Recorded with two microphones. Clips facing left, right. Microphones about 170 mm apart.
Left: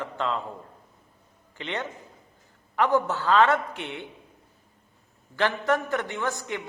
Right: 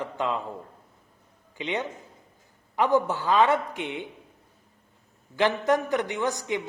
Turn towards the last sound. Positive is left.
turn(degrees=-15)  # may be behind; listen again after turning